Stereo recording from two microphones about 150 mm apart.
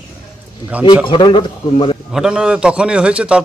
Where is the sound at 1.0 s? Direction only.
35° left (ahead or behind).